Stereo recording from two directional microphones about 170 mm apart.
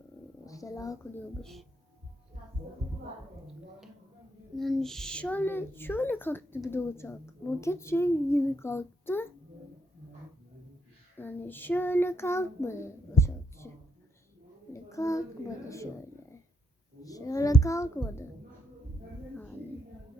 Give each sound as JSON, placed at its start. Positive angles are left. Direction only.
{"t": 0.4, "sound": "a sound", "side_deg": 20}
{"t": 1.4, "sound": "speech", "side_deg": 0}
{"t": 4.5, "sound": "a woman's voice", "side_deg": 0}
{"t": 11.2, "sound": "child singing", "side_deg": 10}
{"t": 14.7, "sound": "a child's voice", "side_deg": 15}
{"t": 17.0, "sound": "a child's voice", "side_deg": 20}